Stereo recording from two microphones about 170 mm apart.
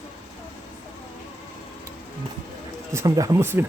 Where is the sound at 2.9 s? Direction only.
20° right (ahead or behind).